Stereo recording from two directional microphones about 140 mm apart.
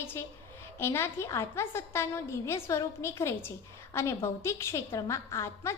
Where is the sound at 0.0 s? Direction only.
15° left (ahead or behind).